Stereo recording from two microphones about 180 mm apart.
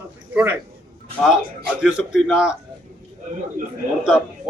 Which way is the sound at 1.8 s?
5° right (ahead or behind).